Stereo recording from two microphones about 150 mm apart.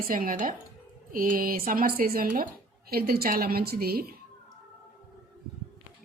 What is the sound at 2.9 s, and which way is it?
A woman's voice, 90° right.